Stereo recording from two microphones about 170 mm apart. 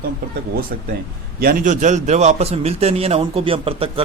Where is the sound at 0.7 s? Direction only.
65° right (ahead or behind).